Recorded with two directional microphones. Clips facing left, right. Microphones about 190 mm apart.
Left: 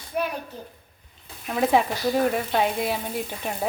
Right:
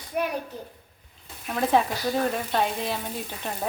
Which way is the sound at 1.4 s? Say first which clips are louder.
Left 2 dB; 5° left (ahead or behind).